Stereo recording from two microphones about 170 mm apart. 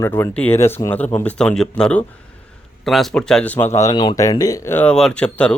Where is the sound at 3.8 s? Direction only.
25° left (ahead or behind); by 5.5 s 5° left (ahead or behind).